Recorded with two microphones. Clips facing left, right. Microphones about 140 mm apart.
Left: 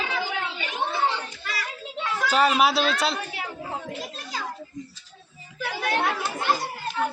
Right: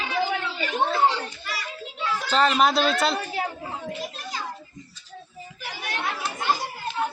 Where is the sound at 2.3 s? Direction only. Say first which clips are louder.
Even; 10° left (ahead or behind).